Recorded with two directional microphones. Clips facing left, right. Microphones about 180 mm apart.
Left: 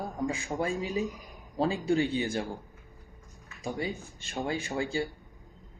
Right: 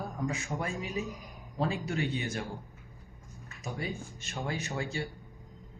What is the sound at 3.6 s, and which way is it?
A man's voice, 30° left (ahead or behind).